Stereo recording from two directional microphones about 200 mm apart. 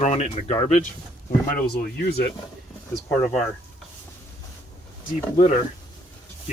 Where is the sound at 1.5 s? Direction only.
50° left (ahead or behind).